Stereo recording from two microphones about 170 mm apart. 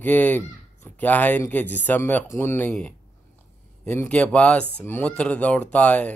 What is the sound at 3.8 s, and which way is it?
Speech, 10° left (ahead or behind).